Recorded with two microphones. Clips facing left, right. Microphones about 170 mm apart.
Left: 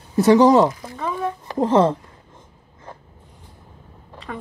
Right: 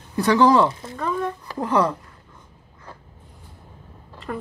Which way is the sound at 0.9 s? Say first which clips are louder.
Even; 5° left (ahead or behind).